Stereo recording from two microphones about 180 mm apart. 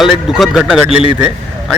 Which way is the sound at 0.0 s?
Centre (ahead or behind).